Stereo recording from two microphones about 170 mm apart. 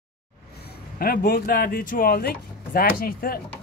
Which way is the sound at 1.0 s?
65° left (ahead or behind).